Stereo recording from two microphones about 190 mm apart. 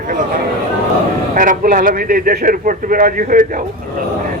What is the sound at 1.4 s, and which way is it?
A man's voice, 45° right (ahead or behind).